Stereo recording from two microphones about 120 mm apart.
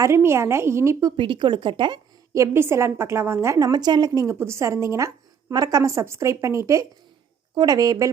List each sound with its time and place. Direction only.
0.0 s a woman's voice: 20° right (ahead or behind)
1.1 s speech: 45° right (ahead or behind)
2.3 s a woman's voice: 20° right (ahead or behind)